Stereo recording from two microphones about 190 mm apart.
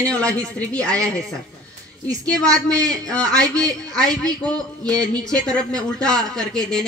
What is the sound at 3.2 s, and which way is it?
Speech, 20° right (ahead or behind).